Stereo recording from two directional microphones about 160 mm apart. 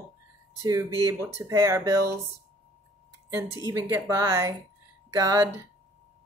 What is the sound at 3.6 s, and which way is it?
Speech, 15° right (ahead or behind).